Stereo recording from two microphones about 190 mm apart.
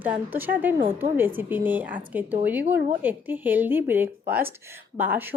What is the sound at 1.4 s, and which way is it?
A woman's voice, 10° right (ahead or behind).